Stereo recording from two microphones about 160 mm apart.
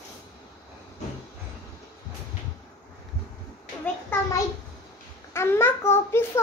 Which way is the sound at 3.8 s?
15° left (ahead or behind).